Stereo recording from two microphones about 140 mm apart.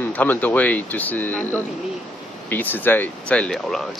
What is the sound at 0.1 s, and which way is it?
Speech, 10° left (ahead or behind).